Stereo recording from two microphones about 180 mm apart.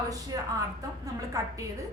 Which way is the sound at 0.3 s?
20° right (ahead or behind).